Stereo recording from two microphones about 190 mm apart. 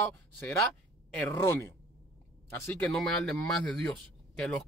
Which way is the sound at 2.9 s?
Centre (ahead or behind).